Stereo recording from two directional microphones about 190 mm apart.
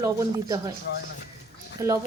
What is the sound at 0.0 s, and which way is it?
Speech, 20° right (ahead or behind).